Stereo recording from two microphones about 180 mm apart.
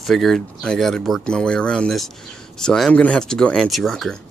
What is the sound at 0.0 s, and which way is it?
Speech, centre (ahead or behind).